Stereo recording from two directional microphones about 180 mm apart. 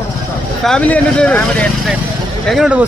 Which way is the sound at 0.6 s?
5° left (ahead or behind).